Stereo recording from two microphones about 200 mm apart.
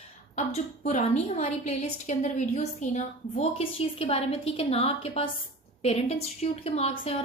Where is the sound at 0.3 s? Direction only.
35° left (ahead or behind).